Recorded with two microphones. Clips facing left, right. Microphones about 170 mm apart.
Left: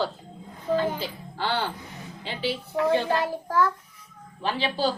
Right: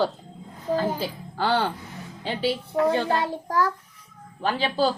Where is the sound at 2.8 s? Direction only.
30° right (ahead or behind).